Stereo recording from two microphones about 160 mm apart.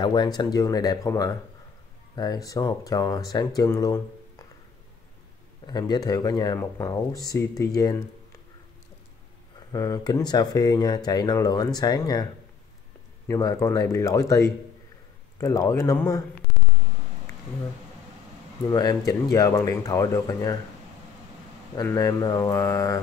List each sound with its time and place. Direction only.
0.0 s speech: 25° left (ahead or behind)
5.7 s speech: 25° left (ahead or behind)
9.7 s speech: 25° left (ahead or behind)
13.3 s speech: 20° left (ahead or behind)
18.7 s speech: 25° left (ahead or behind)
21.8 s speech: 20° left (ahead or behind)